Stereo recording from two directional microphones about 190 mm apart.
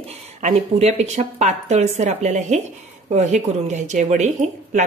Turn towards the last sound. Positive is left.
turn(degrees=-40)  # may be behind; listen again after turning